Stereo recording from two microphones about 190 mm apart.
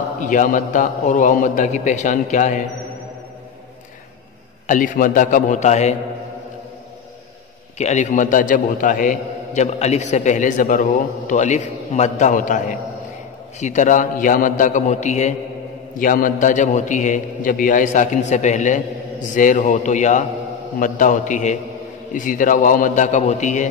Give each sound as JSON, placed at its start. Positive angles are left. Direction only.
{"t": 0.2, "sound": "a man's voice", "side_deg": 45}
{"t": 4.6, "sound": "a man's voice", "side_deg": 45}
{"t": 7.7, "sound": "a man's voice", "side_deg": 40}